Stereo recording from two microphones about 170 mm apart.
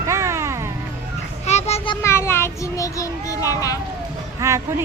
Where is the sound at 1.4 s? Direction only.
40° left (ahead or behind).